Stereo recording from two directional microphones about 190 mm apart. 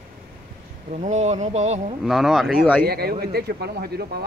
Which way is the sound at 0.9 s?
35° right (ahead or behind).